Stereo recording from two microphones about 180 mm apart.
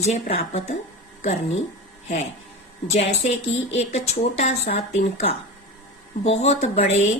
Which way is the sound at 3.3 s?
40° left (ahead or behind).